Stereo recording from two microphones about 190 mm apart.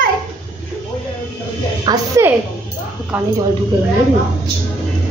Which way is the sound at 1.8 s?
20° right (ahead or behind).